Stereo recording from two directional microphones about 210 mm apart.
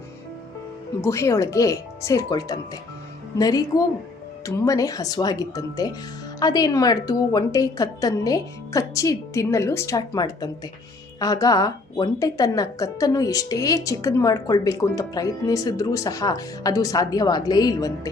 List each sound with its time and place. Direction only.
1.0 s a woman's voice: 15° left (ahead or behind)